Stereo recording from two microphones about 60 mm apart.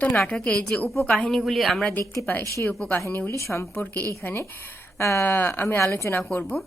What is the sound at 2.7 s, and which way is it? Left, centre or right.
A woman's voice, left.